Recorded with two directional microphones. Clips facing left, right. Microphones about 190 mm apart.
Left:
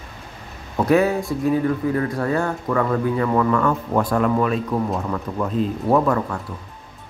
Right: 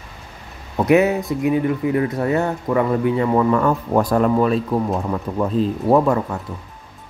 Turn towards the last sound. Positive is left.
turn(degrees=-25)  # may be behind; listen again after turning